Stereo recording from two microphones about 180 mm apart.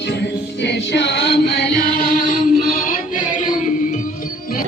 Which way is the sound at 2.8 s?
45° left (ahead or behind).